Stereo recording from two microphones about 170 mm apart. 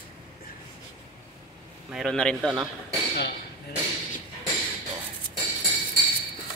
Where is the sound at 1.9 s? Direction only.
5° left (ahead or behind).